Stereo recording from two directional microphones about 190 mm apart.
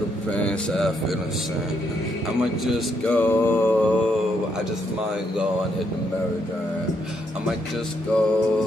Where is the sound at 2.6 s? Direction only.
10° left (ahead or behind).